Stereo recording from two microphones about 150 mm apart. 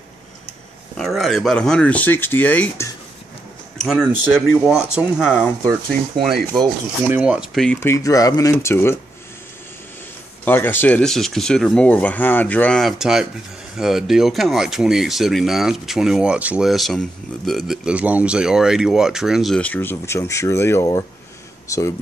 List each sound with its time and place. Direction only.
0.9 s speech: centre (ahead or behind)
3.7 s speech: centre (ahead or behind)
7.1 s speech: 5° right (ahead or behind)
7.8 s speech: 20° left (ahead or behind)
10.4 s speech: 15° left (ahead or behind)